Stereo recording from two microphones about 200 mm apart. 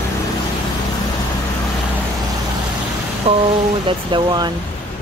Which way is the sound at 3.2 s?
30° right (ahead or behind).